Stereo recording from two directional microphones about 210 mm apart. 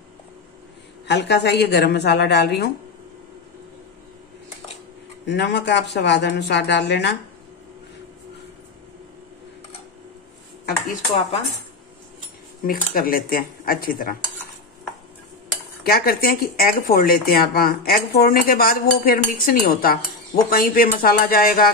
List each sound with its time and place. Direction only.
1.0 s speech: 55° left (ahead or behind)
5.2 s speech: 55° left (ahead or behind)
12.6 s speech: 45° left (ahead or behind)
15.8 s speech: 45° left (ahead or behind)